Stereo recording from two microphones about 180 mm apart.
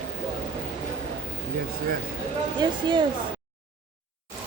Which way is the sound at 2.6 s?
25° right (ahead or behind).